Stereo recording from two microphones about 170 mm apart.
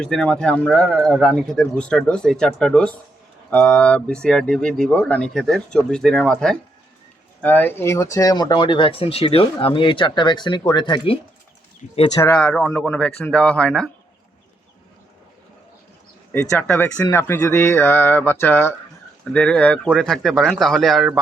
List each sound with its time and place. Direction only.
0.0 s speech: 5° left (ahead or behind); by 11.2 s 30° left (ahead or behind)
11.8 s speech: 5° right (ahead or behind)
12.3 s speech: 5° left (ahead or behind)
16.3 s speech: 10° left (ahead or behind)